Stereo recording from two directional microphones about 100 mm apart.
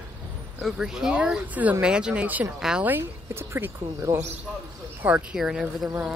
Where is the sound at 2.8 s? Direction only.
25° right (ahead or behind).